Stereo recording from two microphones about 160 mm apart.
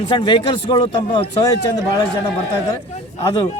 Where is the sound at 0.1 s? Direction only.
30° left (ahead or behind).